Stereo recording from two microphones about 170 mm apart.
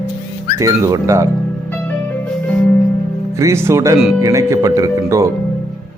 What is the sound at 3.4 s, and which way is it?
Speech, 15° right (ahead or behind).